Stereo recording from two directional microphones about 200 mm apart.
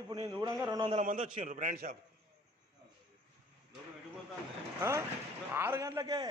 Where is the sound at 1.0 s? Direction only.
35° right (ahead or behind).